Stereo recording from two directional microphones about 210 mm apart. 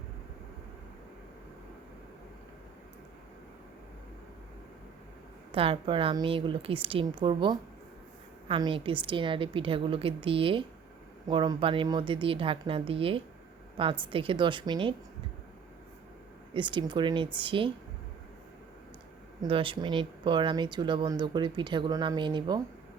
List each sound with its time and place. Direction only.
5.5 s speech: 25° right (ahead or behind)
16.6 s speech: 25° right (ahead or behind)
19.4 s speech: 25° right (ahead or behind)